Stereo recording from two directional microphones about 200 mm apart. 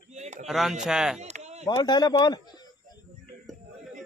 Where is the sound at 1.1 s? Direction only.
35° right (ahead or behind).